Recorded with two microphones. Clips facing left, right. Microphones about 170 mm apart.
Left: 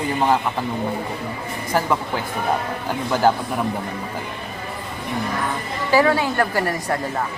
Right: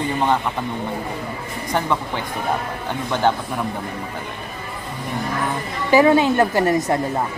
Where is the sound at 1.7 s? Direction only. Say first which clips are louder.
Left 1 dB; 5° left (ahead or behind).